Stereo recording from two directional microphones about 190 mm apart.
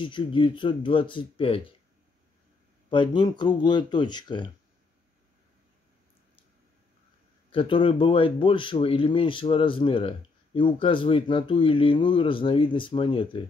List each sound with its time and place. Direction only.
0.0 s speech: 25° left (ahead or behind)
2.9 s speech: 25° left (ahead or behind)
7.5 s speech: 25° left (ahead or behind)